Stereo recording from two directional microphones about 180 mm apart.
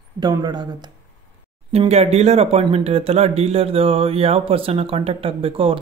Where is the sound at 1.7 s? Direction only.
35° right (ahead or behind).